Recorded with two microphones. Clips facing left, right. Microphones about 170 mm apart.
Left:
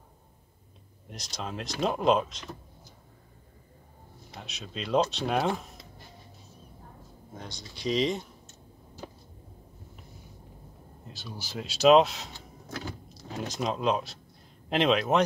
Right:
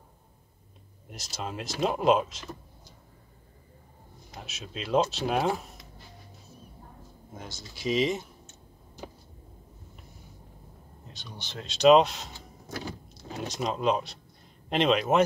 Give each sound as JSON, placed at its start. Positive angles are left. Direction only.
{"t": 1.1, "sound": "speech", "side_deg": -5}
{"t": 4.4, "sound": "speech", "side_deg": -5}
{"t": 7.3, "sound": "speech", "side_deg": -5}
{"t": 11.1, "sound": "speech", "side_deg": 0}